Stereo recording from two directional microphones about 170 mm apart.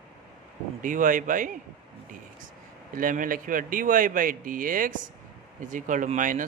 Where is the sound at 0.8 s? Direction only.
50° right (ahead or behind).